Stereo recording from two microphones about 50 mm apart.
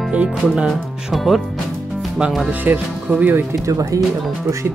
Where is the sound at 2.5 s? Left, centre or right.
Right.